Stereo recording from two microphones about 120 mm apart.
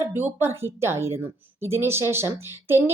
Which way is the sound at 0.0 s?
20° right (ahead or behind).